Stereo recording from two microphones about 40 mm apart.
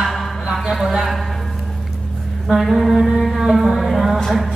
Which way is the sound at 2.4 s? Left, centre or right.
Centre.